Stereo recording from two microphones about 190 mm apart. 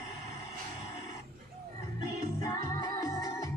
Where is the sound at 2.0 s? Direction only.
20° left (ahead or behind).